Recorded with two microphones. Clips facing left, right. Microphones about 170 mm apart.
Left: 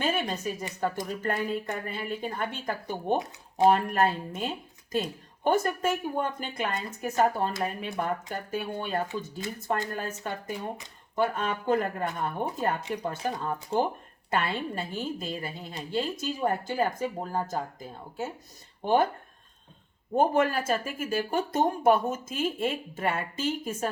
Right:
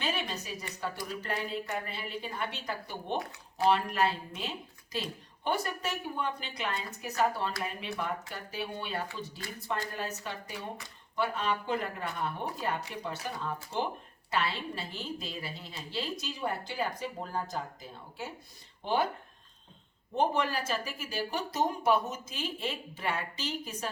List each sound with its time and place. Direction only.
0.0 s a woman's voice: 50° left (ahead or behind)
20.1 s a woman's voice: 50° left (ahead or behind)